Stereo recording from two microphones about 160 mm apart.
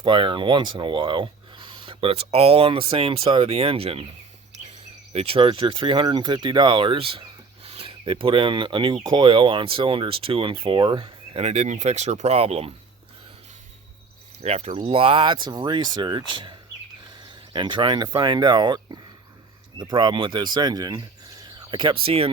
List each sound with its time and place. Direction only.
0.0 s speech: 30° right (ahead or behind)
5.1 s speech: 35° right (ahead or behind)
14.4 s speech: 40° right (ahead or behind)